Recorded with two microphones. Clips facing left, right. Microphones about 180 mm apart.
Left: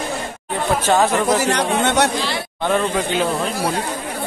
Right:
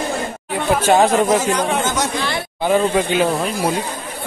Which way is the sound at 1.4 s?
70° left (ahead or behind).